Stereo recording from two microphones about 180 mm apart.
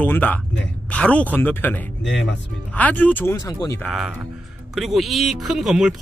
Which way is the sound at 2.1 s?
85° left.